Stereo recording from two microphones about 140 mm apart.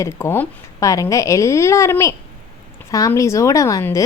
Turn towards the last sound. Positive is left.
turn(degrees=20)  # may be behind; listen again after turning